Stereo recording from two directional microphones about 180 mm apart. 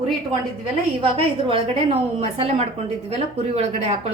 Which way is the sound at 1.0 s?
30° right (ahead or behind).